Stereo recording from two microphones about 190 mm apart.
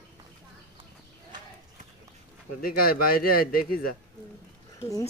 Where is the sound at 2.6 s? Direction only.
50° left (ahead or behind).